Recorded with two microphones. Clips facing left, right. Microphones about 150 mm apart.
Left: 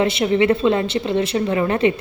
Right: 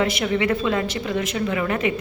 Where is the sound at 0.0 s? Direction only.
25° left (ahead or behind).